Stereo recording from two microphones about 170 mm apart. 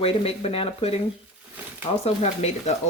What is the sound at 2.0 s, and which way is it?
Speech, 40° left (ahead or behind).